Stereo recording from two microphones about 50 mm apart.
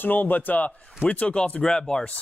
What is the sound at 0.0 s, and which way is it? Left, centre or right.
Speech, left.